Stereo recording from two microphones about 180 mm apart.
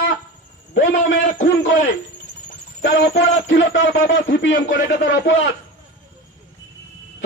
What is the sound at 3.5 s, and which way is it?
A man's voice, 90° left.